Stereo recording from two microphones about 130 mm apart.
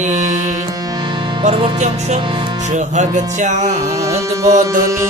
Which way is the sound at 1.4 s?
55° right (ahead or behind).